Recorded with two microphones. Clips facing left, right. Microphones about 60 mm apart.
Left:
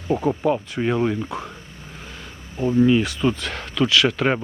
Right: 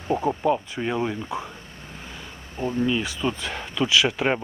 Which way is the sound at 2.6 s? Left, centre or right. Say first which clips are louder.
Left 7 dB; centre.